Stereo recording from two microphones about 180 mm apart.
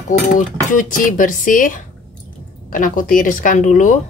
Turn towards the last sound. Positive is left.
turn(degrees=45)  # may be behind; listen again after turning